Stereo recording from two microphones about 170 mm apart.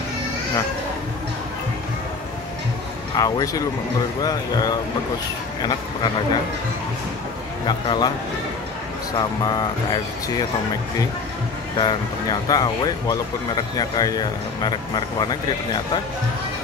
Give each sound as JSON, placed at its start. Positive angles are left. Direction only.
{"t": 3.2, "sound": "speech", "side_deg": 20}
{"t": 7.6, "sound": "speech", "side_deg": 25}
{"t": 9.4, "sound": "speech", "side_deg": 25}
{"t": 11.7, "sound": "speech", "side_deg": 25}